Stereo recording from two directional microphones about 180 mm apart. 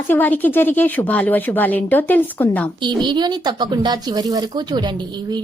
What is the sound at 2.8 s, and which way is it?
A woman's voice, 25° right (ahead or behind).